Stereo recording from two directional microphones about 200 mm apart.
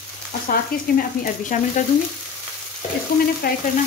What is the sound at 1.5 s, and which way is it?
Speech, 40° left (ahead or behind).